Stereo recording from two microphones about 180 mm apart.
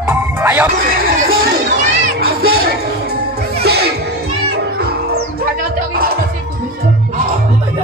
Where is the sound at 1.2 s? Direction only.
55° right (ahead or behind).